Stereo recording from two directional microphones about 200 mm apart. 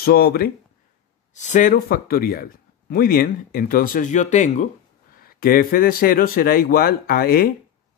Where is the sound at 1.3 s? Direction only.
35° left (ahead or behind).